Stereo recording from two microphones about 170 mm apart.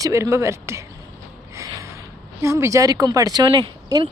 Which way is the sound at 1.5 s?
20° right (ahead or behind).